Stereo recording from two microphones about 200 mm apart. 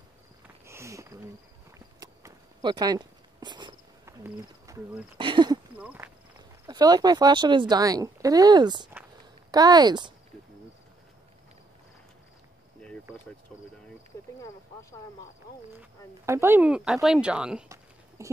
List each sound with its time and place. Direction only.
0.7 s a sound: 15° right (ahead or behind)
5.1 s speech: 25° right (ahead or behind)
5.8 s speech: 5° right (ahead or behind)
6.6 s speech: 20° right (ahead or behind)
15.8 s speech: 10° right (ahead or behind)
18.2 s horse: 15° right (ahead or behind)